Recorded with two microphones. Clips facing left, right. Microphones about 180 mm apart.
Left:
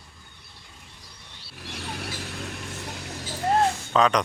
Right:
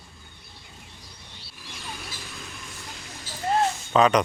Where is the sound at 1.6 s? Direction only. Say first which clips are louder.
Left 5 dB; 65° left (ahead or behind).